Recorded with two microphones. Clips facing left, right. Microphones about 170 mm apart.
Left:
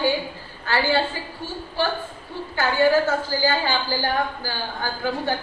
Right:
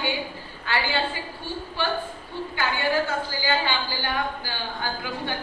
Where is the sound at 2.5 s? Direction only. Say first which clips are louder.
Left 7 dB; 40° left (ahead or behind).